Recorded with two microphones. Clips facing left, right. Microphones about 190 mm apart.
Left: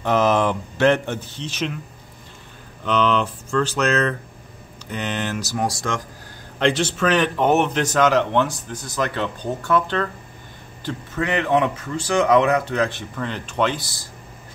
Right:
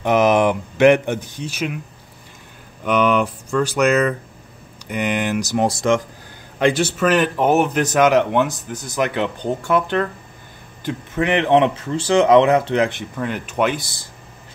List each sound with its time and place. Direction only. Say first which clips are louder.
0.0 s speech: right 3 dB; 15° right (ahead or behind)
2.8 s speech: right 3 dB; 10° right (ahead or behind)
6.6 s speech: right 3 dB; 10° right (ahead or behind)